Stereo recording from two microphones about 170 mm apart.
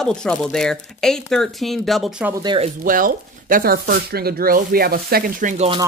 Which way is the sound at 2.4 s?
30° right (ahead or behind).